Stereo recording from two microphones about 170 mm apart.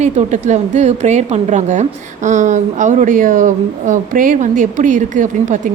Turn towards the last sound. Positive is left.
turn(degrees=-50)  # may be behind; listen again after turning